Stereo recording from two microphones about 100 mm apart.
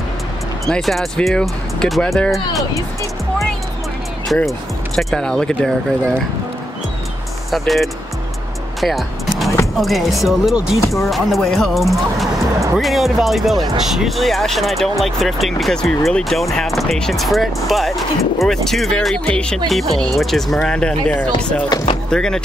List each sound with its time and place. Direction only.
0.7 s speech: 5° left (ahead or behind)
4.5 s speech: 5° left (ahead or behind)
7.5 s speech: centre (ahead or behind)
8.8 s music: centre (ahead or behind)
9.8 s speech: centre (ahead or behind)